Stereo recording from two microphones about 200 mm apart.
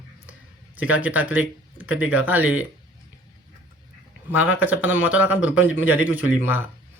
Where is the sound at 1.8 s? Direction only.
90° left.